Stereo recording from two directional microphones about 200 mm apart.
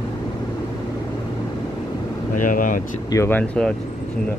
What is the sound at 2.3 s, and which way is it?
Speech, 40° left (ahead or behind).